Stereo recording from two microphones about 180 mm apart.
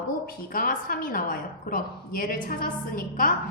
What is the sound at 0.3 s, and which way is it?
A woman's voice, 50° left (ahead or behind).